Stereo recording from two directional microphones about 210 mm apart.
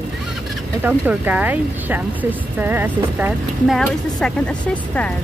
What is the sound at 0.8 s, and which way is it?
Speech, 10° right (ahead or behind).